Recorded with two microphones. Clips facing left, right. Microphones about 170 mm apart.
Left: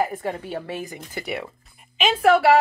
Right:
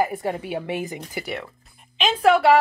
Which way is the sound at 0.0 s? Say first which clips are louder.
Right 1 dB; 10° right (ahead or behind).